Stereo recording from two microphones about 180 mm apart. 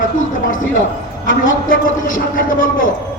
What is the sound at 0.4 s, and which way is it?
A man's voice, 50° left (ahead or behind).